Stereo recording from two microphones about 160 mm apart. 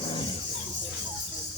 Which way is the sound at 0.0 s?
35° left (ahead or behind).